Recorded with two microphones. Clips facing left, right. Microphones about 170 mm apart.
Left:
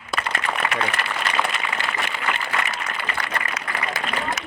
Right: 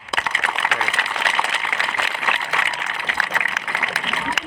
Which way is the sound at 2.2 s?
75° right (ahead or behind).